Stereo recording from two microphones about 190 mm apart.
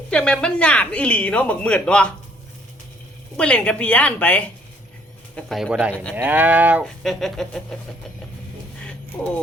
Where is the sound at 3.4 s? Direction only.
5° left (ahead or behind).